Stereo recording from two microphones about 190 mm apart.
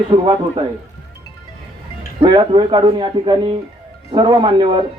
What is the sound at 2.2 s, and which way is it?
A man's voice, 25° right (ahead or behind).